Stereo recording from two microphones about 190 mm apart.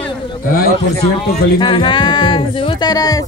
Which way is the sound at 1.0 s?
25° left (ahead or behind).